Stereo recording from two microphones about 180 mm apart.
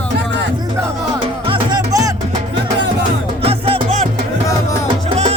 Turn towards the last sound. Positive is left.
turn(degrees=-35)  # may be behind; listen again after turning